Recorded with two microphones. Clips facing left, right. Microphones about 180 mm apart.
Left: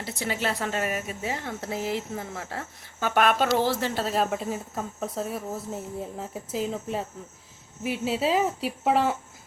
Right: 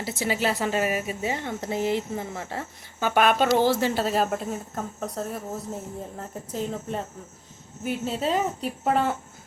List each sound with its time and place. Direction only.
0.0 s speech: 5° right (ahead or behind)